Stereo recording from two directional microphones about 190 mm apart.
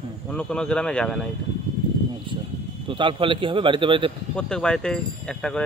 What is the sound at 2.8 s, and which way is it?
A man's voice, 25° right (ahead or behind).